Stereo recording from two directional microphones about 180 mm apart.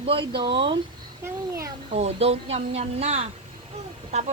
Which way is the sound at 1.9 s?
35° right (ahead or behind).